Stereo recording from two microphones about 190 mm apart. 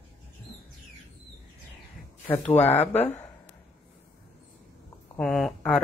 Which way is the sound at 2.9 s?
35° left (ahead or behind).